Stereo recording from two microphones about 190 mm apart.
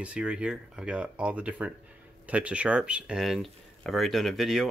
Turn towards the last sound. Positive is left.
turn(degrees=0)  # may be behind; listen again after turning